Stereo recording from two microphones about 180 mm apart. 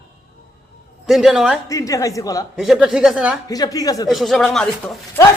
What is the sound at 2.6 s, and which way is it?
Speech, centre (ahead or behind).